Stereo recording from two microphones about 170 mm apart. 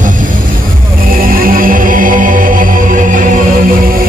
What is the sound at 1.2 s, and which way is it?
Music, 55° right (ahead or behind).